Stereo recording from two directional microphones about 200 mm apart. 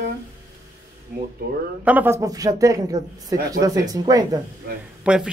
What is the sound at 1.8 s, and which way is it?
A woman's voice, 10° right (ahead or behind).